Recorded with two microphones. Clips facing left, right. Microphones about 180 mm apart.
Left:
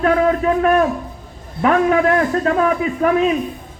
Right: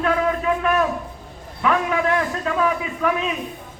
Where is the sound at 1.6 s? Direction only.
50° left (ahead or behind).